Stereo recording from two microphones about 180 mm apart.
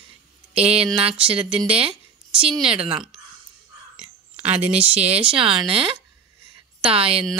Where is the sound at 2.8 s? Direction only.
30° right (ahead or behind).